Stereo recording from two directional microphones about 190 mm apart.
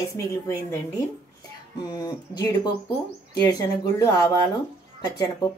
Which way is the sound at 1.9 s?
20° left (ahead or behind).